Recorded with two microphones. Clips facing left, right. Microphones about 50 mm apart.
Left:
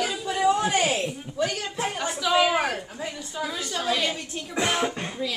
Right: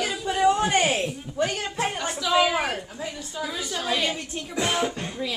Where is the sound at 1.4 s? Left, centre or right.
Right.